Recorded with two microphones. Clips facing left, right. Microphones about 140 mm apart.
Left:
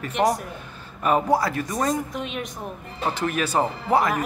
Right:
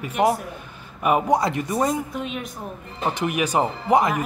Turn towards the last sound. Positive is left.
turn(degrees=-15)  # may be behind; listen again after turning